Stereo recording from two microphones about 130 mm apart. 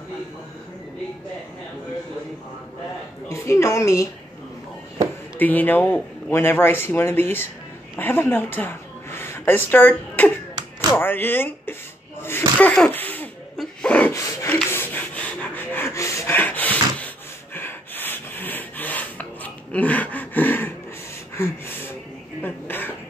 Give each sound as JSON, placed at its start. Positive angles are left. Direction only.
{"t": 3.3, "sound": "a woman's voice", "side_deg": 20}
{"t": 5.4, "sound": "a woman's voice", "side_deg": 15}
{"t": 12.2, "sound": "sneeze", "side_deg": 15}
{"t": 13.6, "sound": "a sound", "side_deg": 10}
{"t": 14.1, "sound": "rub", "side_deg": 20}
{"t": 22.4, "sound": "throat clearing", "side_deg": 15}